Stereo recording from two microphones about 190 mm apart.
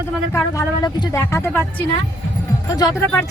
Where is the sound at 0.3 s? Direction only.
20° left (ahead or behind).